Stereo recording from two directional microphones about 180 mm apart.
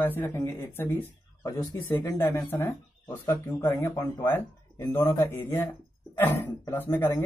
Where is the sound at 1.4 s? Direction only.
25° left (ahead or behind).